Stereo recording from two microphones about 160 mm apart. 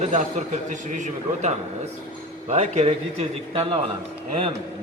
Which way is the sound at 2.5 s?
40° right (ahead or behind).